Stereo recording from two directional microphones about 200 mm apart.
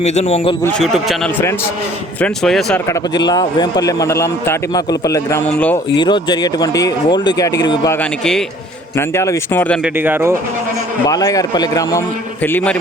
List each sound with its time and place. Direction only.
0.0 s a man's voice: 35° left (ahead or behind)
0.6 s a man's voice: 5° left (ahead or behind)
2.8 s a man's voice: 15° left (ahead or behind)
5.9 s speech: 20° left (ahead or behind)
8.2 s a man's voice: 5° left (ahead or behind)
9.0 s a man's voice: 15° left (ahead or behind)
9.8 s speech: 10° right (ahead or behind)
11.0 s a man's voice: 15° left (ahead or behind)